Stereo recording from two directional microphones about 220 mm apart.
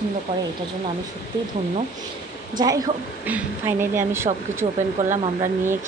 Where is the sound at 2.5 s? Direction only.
15° right (ahead or behind).